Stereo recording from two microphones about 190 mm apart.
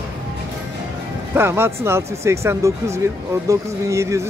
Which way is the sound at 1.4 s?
10° right (ahead or behind).